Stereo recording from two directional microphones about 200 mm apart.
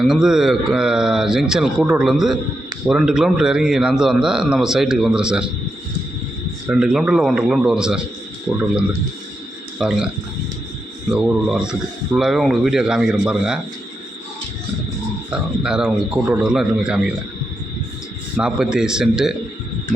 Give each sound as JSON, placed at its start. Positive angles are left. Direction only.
{"t": 0.0, "sound": "a man's voice", "side_deg": 0}
{"t": 6.7, "sound": "a man's voice", "side_deg": -5}
{"t": 9.7, "sound": "a man's voice", "side_deg": 0}
{"t": 11.1, "sound": "a man's voice", "side_deg": -5}
{"t": 15.3, "sound": "a man's voice", "side_deg": -5}
{"t": 18.3, "sound": "a man's voice", "side_deg": -5}